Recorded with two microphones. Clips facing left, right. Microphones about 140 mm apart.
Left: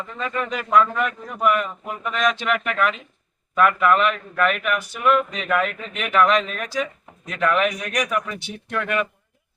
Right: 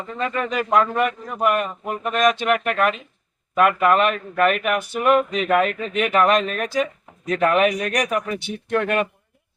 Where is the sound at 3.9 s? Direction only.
45° right (ahead or behind).